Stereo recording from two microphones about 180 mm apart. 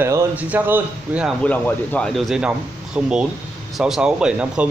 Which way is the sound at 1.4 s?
10° left (ahead or behind).